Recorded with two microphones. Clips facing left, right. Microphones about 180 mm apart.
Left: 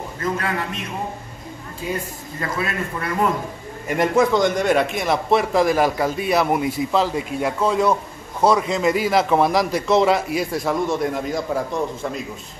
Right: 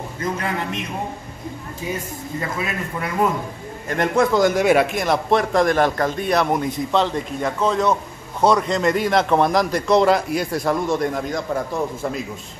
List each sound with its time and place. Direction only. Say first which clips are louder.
0.2 s a man's voice: even; 20° right (ahead or behind)
2.5 s a man's voice: left 1 dB; 20° right (ahead or behind)
3.9 s a man's voice: left 1 dB; 10° left (ahead or behind)
4.3 s a man's voice: right 2 dB; 5° right (ahead or behind)